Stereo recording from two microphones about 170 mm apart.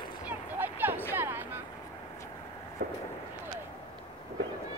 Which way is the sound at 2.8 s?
60° right (ahead or behind).